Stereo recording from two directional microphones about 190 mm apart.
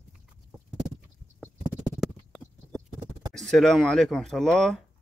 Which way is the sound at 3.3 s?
Centre (ahead or behind).